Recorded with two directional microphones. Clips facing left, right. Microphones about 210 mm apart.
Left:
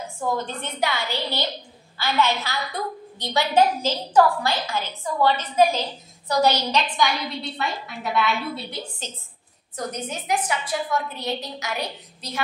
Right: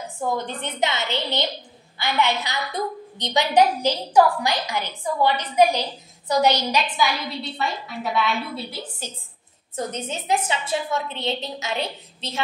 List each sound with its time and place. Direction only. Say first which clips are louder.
0.5 s a woman's voice: right 1 dB; 20° right (ahead or behind)
7.0 s a woman's voice: even; centre (ahead or behind)
9.8 s a woman's voice: right 2 dB; 25° right (ahead or behind)